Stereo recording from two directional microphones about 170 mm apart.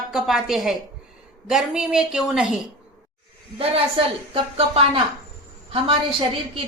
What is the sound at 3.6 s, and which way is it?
A woman's voice, 35° right (ahead or behind).